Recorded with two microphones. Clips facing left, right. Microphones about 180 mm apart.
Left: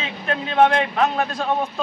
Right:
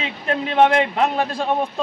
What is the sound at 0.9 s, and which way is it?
Speech, 30° right (ahead or behind).